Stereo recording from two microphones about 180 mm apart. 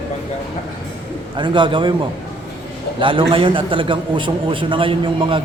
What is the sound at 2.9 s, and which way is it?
A man's voice, 30° right (ahead or behind).